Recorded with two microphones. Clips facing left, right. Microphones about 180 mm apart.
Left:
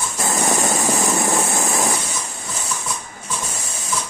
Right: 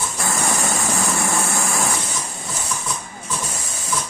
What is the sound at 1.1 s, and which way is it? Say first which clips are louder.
Vehicle: left 3 dB; 20° left (ahead or behind).